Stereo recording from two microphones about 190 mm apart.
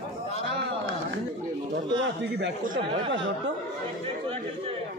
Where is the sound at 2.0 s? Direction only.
65° right (ahead or behind).